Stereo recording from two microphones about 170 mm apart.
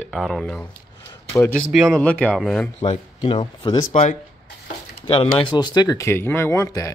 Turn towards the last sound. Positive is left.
turn(degrees=20)  # may be behind; listen again after turning